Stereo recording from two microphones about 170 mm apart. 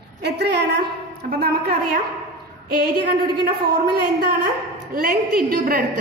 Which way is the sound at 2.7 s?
70° right (ahead or behind).